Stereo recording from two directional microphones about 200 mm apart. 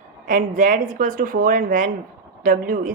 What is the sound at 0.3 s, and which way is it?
A woman's voice, 40° right (ahead or behind).